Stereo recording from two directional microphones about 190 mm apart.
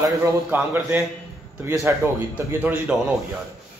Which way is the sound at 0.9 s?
10° right (ahead or behind).